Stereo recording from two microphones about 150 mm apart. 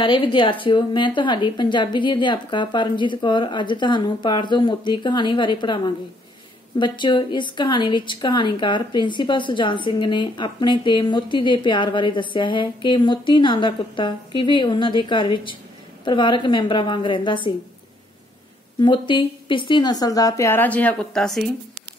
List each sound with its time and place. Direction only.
0.0 s a woman's voice: 35° left (ahead or behind)
18.8 s a woman's voice: 30° left (ahead or behind); by 21.5 s 5° left (ahead or behind)